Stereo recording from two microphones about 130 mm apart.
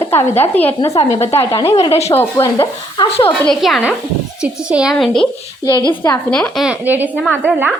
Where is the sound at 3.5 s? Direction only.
Centre (ahead or behind).